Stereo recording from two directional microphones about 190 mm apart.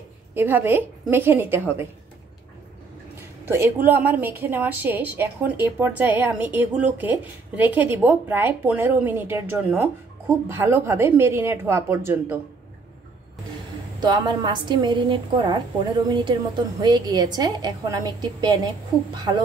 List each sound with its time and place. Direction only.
0.3 s a woman's voice: 10° right (ahead or behind)
3.4 s a woman's voice: 10° right (ahead or behind)
13.9 s a woman's voice: 20° right (ahead or behind)